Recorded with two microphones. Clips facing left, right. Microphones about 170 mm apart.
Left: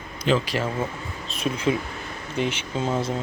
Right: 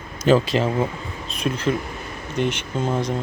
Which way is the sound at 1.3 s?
5° left (ahead or behind).